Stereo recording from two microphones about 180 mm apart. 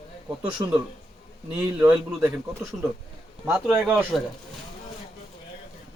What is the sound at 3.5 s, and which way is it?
Speech, 5° right (ahead or behind).